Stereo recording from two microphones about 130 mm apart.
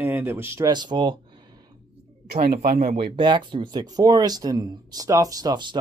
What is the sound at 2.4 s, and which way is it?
Speech, 85° right.